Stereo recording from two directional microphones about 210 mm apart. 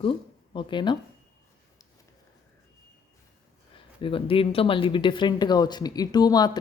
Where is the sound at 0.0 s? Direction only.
25° left (ahead or behind).